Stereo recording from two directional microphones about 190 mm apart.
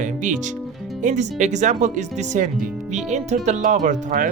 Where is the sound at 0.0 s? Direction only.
40° right (ahead or behind).